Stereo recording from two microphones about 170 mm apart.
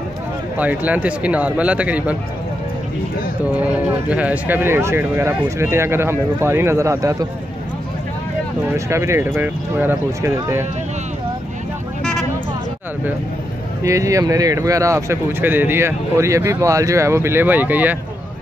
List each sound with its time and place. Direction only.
0.6 s speech: 10° right (ahead or behind)
3.5 s speech: 10° right (ahead or behind)
8.7 s speech: 15° right (ahead or behind)
12.0 s vehicle: 5° left (ahead or behind)
13.8 s speech: 20° right (ahead or behind)